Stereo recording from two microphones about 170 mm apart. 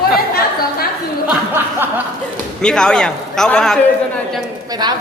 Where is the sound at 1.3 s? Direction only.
10° right (ahead or behind).